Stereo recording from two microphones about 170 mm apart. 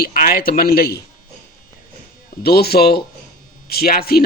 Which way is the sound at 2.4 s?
65° left (ahead or behind).